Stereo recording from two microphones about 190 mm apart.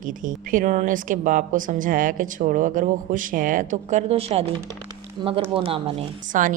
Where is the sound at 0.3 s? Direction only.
45° right (ahead or behind); by 5.9 s 30° right (ahead or behind).